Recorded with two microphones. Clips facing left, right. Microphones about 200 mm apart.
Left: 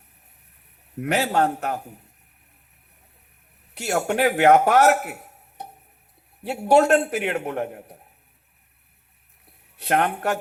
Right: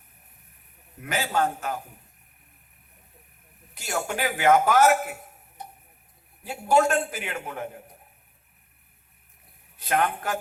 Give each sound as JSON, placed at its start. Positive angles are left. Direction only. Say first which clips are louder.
{"t": 1.0, "sound": "a man's voice", "louder": "left 5 dB", "side_deg": 65}
{"t": 3.8, "sound": "a man's voice", "louder": "left 7 dB", "side_deg": 65}
{"t": 5.6, "sound": "tick-tock", "louder": "left 3 dB", "side_deg": 65}
{"t": 6.4, "sound": "a man's voice", "louder": "left 4 dB", "side_deg": 70}
{"t": 9.7, "sound": "a man's voice", "louder": "left 3 dB", "side_deg": 65}